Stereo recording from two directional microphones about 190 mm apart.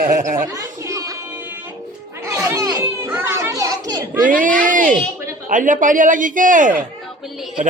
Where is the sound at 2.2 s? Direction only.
15° right (ahead or behind).